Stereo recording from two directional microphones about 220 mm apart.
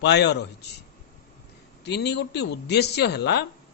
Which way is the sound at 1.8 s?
50° left (ahead or behind).